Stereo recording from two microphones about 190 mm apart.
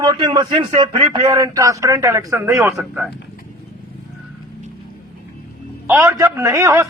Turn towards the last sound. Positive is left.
turn(degrees=-15)  # may be behind; listen again after turning